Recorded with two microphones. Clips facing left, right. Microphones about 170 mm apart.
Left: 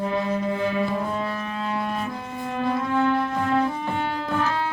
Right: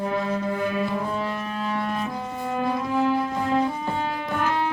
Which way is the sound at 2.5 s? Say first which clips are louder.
Left 1 dB; 20° right (ahead or behind).